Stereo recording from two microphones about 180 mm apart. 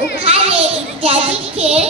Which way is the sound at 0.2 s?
35° right (ahead or behind).